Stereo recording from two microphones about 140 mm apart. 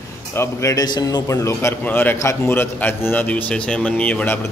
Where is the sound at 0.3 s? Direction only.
20° left (ahead or behind).